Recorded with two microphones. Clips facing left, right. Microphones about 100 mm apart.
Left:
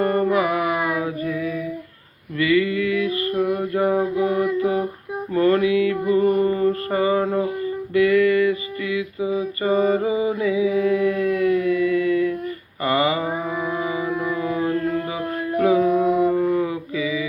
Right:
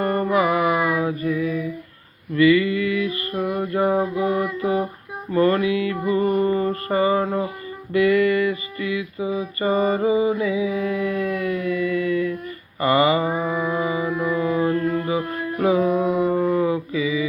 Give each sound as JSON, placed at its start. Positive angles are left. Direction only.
{"t": 0.0, "sound": "music", "side_deg": -5}
{"t": 2.3, "sound": "a sound", "side_deg": -5}
{"t": 4.1, "sound": "mantra", "side_deg": -10}
{"t": 5.3, "sound": "music", "side_deg": -5}
{"t": 6.5, "sound": "mantra", "side_deg": -15}
{"t": 7.9, "sound": "music", "side_deg": -15}
{"t": 9.6, "sound": "a sound", "side_deg": -10}
{"t": 10.1, "sound": "mantra", "side_deg": -30}
{"t": 10.3, "sound": "mantra", "side_deg": 0}
{"t": 10.7, "sound": "a sound", "side_deg": -5}
{"t": 13.4, "sound": "music", "side_deg": -15}
{"t": 15.5, "sound": "mantra", "side_deg": -15}